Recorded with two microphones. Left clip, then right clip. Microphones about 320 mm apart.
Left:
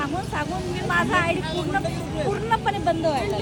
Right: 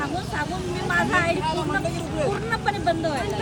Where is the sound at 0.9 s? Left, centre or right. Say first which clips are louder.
Even; centre.